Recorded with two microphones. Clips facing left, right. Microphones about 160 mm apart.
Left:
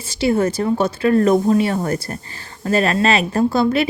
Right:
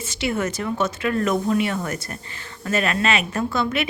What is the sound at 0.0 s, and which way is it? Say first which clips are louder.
A woman's voice: left 7 dB; 35° left (ahead or behind).